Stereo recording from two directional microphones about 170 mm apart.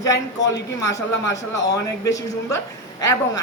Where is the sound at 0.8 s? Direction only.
20° left (ahead or behind).